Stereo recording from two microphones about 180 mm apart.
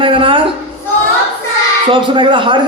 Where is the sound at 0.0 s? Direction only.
30° right (ahead or behind).